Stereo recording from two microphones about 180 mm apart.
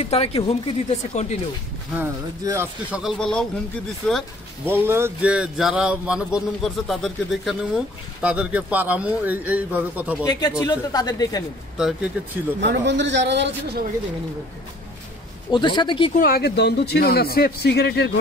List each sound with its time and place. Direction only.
0.1 s speech: 35° left (ahead or behind)
2.0 s speech: 15° right (ahead or behind)
3.0 s speech: centre (ahead or behind)
4.6 s speech: 10° right (ahead or behind)
10.2 s speech: 20° left (ahead or behind)
11.7 s speech: 5° right (ahead or behind)
12.5 s speech: 75° right (ahead or behind)
15.5 s speech: 25° left (ahead or behind)
16.2 s a man's voice: 55° left (ahead or behind)